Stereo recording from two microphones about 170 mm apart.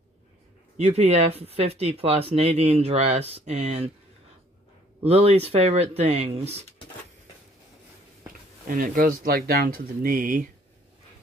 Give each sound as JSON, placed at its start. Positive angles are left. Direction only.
{"t": 0.7, "sound": "speech", "side_deg": -40}
{"t": 5.0, "sound": "speech", "side_deg": -35}
{"t": 8.6, "sound": "speech", "side_deg": -55}